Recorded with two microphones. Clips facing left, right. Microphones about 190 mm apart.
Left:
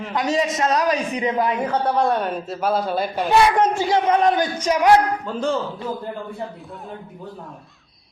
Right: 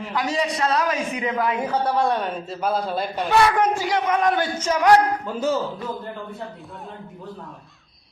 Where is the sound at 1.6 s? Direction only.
Centre (ahead or behind).